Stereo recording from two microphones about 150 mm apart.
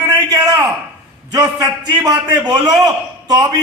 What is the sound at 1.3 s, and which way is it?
A man's voice, 25° right (ahead or behind).